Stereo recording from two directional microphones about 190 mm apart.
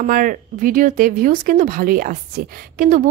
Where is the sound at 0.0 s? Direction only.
45° right (ahead or behind).